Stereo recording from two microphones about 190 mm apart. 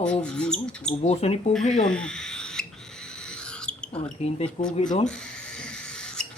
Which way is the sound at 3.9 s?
35° left (ahead or behind).